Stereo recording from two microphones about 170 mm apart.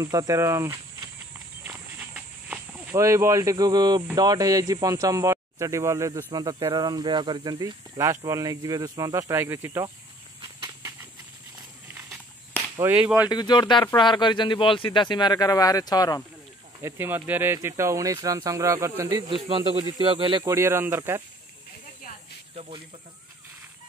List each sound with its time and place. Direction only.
0.0 s speech: 20° right (ahead or behind)
10.6 s a sound: 15° right (ahead or behind)
12.8 s speech: 15° right (ahead or behind)
13.3 s speech: 25° left (ahead or behind)
16.8 s speech: 10° right (ahead or behind)
19.2 s speech: 30° right (ahead or behind)
20.4 s speech: 15° right (ahead or behind)